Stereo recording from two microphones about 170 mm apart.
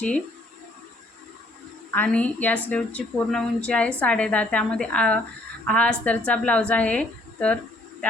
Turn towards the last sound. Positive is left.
turn(degrees=5)  # may be behind; listen again after turning